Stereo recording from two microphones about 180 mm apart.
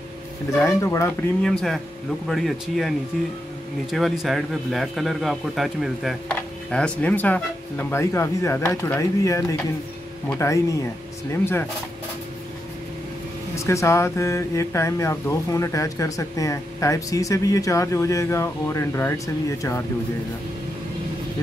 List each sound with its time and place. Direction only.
0.6 s a man's voice: 15° left (ahead or behind); by 2.9 s centre (ahead or behind)
3.9 s a man's voice: centre (ahead or behind); by 10.8 s 15° left (ahead or behind)
13.6 s speech: 15° left (ahead or behind)